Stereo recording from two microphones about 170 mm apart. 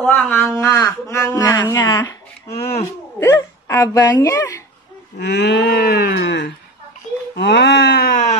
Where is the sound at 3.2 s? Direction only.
15° left (ahead or behind).